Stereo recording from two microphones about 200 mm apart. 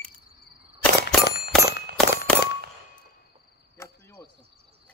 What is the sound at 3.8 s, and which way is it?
Cricket, 15° left (ahead or behind).